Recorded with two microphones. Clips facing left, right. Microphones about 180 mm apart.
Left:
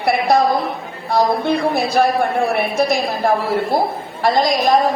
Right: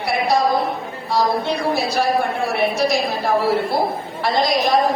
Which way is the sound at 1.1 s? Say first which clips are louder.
Left 3 dB; 55° left (ahead or behind).